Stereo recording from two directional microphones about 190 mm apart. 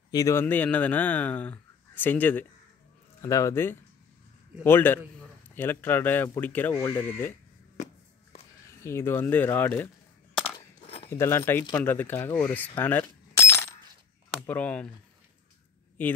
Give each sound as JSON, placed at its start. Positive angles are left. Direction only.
{"t": 0.1, "sound": "speech", "side_deg": 15}
{"t": 8.8, "sound": "speech", "side_deg": 10}
{"t": 10.4, "sound": "a sound", "side_deg": 30}
{"t": 11.1, "sound": "speech", "side_deg": 10}